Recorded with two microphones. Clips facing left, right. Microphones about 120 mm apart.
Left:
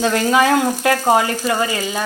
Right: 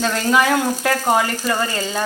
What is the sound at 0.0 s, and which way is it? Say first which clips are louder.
Speech: left 2 dB; 25° left (ahead or behind).